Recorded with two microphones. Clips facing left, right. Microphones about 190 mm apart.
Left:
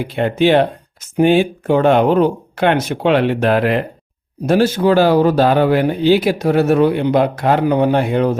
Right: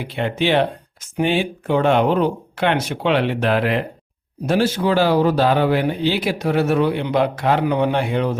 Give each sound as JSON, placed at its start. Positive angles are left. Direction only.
{"t": 0.0, "sound": "speech", "side_deg": 45}